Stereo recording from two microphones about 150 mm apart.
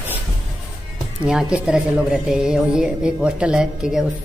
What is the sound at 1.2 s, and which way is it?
Speech, 5° right (ahead or behind).